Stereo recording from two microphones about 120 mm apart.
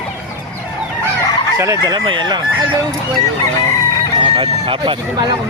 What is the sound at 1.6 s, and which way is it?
Speech, 30° right (ahead or behind).